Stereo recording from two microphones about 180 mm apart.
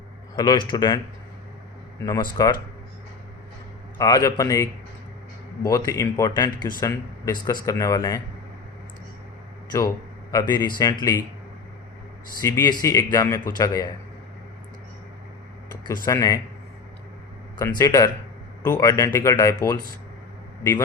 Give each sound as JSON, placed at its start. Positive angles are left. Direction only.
{"t": 0.3, "sound": "a man's voice", "side_deg": 25}
{"t": 2.4, "sound": "speech", "side_deg": 20}
{"t": 3.9, "sound": "speech", "side_deg": 20}
{"t": 10.3, "sound": "speech", "side_deg": 15}
{"t": 12.4, "sound": "speech", "side_deg": 15}
{"t": 15.8, "sound": "speech", "side_deg": 20}
{"t": 17.6, "sound": "speech", "side_deg": 20}